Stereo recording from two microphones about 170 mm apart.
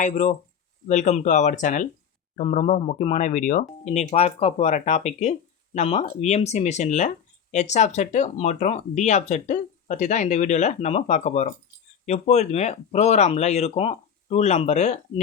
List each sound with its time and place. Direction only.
0.0 s speech: 45° left (ahead or behind)